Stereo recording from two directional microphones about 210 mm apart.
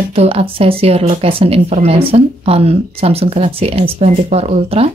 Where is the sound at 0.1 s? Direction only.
30° right (ahead or behind).